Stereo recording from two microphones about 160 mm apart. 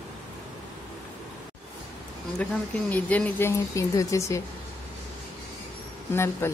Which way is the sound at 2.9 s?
10° left (ahead or behind).